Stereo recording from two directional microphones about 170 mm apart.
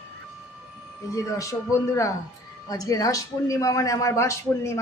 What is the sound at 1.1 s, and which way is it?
A man's voice, 20° left (ahead or behind).